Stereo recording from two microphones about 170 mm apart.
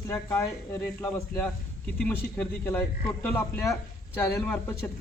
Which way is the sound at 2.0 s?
10° left (ahead or behind).